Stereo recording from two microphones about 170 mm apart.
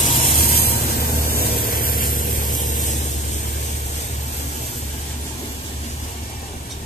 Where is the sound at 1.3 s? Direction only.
60° left (ahead or behind).